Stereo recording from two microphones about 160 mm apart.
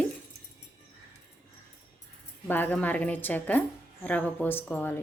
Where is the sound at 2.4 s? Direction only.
10° left (ahead or behind).